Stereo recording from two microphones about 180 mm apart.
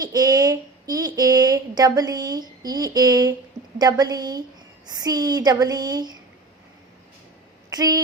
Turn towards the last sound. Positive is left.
turn(degrees=-20)  # may be behind; listen again after turning